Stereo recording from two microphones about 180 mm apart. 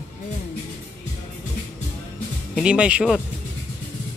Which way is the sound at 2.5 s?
5° right (ahead or behind).